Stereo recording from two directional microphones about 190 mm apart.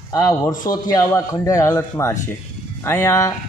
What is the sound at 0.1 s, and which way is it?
A man's voice, 20° left (ahead or behind).